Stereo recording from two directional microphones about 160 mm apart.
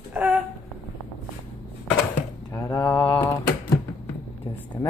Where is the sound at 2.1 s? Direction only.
15° left (ahead or behind).